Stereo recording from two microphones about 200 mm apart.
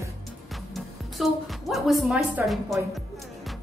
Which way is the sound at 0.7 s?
Centre (ahead or behind).